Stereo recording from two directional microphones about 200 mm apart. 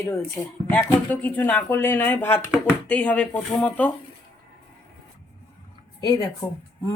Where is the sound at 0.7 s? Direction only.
10° left (ahead or behind).